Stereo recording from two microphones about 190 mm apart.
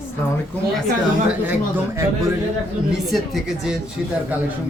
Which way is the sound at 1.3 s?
10° right (ahead or behind).